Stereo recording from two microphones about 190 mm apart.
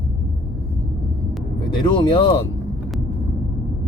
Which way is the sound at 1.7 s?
25° left (ahead or behind).